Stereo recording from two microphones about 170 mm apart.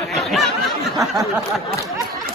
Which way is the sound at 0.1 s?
Centre (ahead or behind).